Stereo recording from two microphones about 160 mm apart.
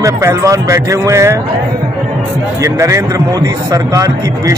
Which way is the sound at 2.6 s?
20° right (ahead or behind).